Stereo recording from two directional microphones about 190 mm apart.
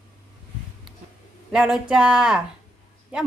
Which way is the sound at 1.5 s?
5° right (ahead or behind).